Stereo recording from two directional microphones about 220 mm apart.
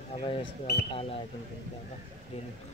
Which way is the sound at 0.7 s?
50° left (ahead or behind).